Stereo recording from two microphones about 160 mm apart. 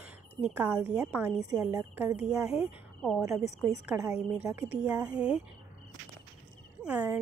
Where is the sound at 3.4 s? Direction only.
45° left (ahead or behind).